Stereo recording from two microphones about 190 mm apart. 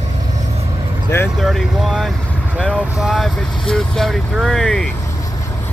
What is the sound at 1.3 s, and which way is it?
Vehicle, centre (ahead or behind).